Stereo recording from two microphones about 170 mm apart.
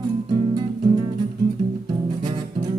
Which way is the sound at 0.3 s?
25° right (ahead or behind).